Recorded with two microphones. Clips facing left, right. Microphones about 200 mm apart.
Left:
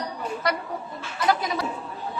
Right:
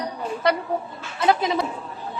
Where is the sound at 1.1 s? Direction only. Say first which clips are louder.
Right 3 dB; 25° right (ahead or behind).